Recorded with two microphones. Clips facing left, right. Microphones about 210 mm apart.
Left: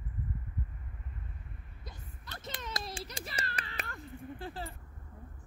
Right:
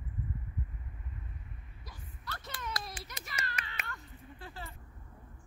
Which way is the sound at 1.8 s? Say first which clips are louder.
Right 3 dB; 20° left (ahead or behind).